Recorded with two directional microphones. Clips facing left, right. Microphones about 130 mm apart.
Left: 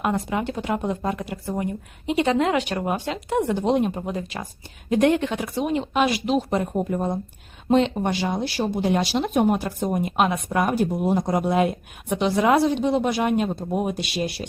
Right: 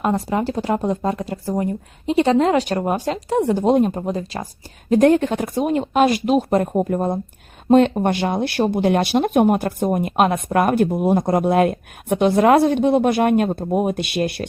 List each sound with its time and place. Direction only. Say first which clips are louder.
0.0 s a woman's voice: right 4 dB; 35° right (ahead or behind); by 14.4 s 55° right (ahead or behind)